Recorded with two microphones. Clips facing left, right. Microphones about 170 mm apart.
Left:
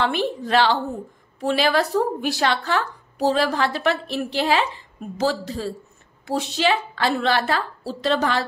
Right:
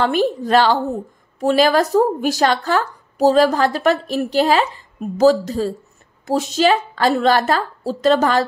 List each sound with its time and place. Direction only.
0.0 s a woman's voice: 40° right (ahead or behind)